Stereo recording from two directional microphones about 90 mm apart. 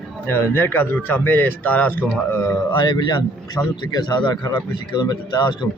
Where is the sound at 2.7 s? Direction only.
60° left (ahead or behind).